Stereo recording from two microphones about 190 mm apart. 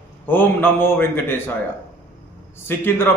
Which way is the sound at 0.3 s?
10° left (ahead or behind).